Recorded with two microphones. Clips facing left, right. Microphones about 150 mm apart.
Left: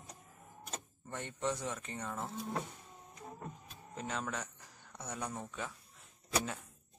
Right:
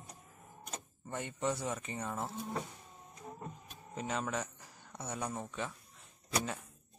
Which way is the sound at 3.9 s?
5° right (ahead or behind).